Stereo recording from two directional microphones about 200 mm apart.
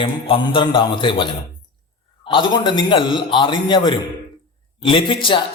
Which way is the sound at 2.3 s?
25° left (ahead or behind).